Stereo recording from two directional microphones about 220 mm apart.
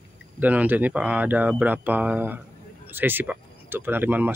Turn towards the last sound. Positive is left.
turn(degrees=-10)  # may be behind; listen again after turning